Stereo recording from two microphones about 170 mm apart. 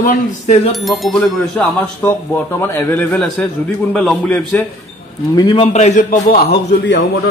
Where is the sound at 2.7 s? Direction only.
10° left (ahead or behind).